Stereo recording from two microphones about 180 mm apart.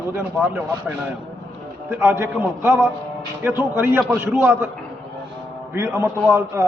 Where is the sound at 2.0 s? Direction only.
15° right (ahead or behind).